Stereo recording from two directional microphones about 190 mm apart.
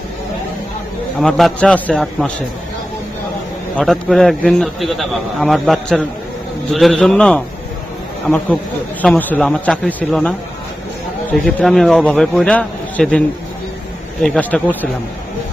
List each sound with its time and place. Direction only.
1.2 s a man's voice: centre (ahead or behind)
3.8 s a man's voice: centre (ahead or behind)
9.0 s a man's voice: 10° left (ahead or behind)